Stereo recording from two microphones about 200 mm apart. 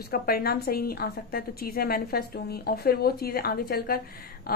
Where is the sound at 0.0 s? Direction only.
50° left (ahead or behind).